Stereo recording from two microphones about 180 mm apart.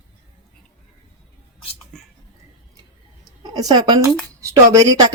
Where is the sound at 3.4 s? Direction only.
20° right (ahead or behind).